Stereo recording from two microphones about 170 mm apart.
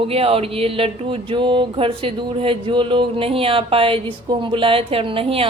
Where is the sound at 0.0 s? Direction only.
35° right (ahead or behind).